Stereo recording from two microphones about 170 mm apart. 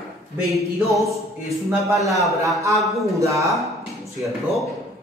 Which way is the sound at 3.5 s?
Centre (ahead or behind).